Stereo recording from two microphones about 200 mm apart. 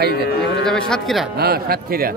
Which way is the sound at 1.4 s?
50° right (ahead or behind).